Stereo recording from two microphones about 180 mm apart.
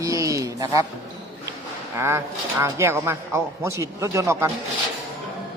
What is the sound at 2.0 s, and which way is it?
Speech, 15° right (ahead or behind).